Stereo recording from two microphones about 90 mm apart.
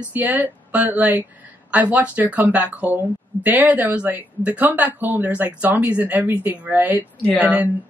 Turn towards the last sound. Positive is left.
turn(degrees=-15)  # may be behind; listen again after turning